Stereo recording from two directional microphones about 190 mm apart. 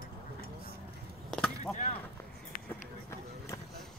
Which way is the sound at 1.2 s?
5° left (ahead or behind).